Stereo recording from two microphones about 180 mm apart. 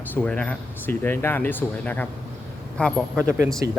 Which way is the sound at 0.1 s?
10° left (ahead or behind).